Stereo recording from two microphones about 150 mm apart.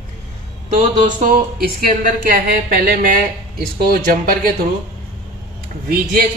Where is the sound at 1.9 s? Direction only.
70° right (ahead or behind).